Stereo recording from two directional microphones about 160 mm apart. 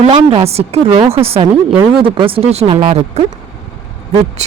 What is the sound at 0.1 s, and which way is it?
A woman's voice, 35° right (ahead or behind).